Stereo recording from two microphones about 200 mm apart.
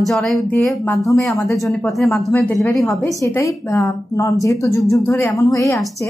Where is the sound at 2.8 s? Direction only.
15° left (ahead or behind).